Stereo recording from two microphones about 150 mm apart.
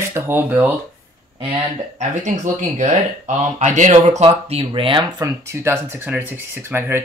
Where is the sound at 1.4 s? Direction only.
35° right (ahead or behind).